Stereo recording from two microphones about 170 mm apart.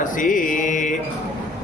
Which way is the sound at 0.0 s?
50° left (ahead or behind).